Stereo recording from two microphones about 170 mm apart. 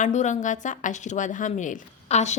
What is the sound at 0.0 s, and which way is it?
A woman's voice, 45° left (ahead or behind).